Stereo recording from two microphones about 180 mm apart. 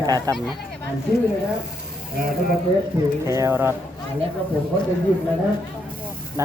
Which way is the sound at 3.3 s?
15° right (ahead or behind).